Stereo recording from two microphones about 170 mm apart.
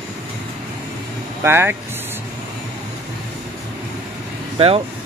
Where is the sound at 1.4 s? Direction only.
15° right (ahead or behind).